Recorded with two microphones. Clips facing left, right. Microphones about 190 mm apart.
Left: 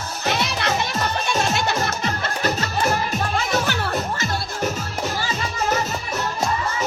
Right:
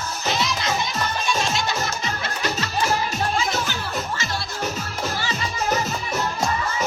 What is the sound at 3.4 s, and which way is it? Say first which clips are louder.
Music: left 3 dB; 60° left (ahead or behind).